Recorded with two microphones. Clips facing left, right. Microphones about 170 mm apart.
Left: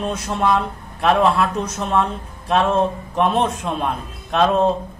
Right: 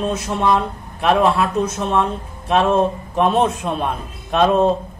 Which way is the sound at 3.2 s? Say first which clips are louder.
Right 2 dB; 5° right (ahead or behind).